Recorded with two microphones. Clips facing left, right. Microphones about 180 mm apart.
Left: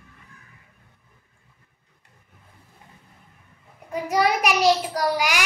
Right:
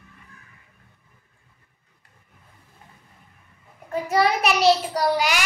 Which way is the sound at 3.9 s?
10° left (ahead or behind).